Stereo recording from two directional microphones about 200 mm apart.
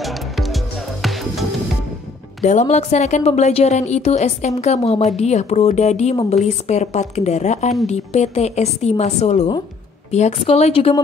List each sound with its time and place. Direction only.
0.0 s music: centre (ahead or behind)
2.4 s a woman's voice: 35° left (ahead or behind)